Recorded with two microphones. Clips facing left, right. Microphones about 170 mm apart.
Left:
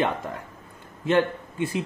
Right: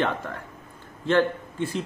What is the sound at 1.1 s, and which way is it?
Speech, 15° left (ahead or behind).